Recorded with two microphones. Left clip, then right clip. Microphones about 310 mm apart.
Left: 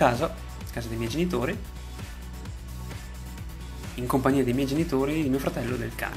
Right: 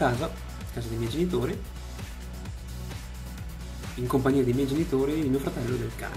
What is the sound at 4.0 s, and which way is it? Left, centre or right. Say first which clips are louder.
Speech: left 2 dB; centre.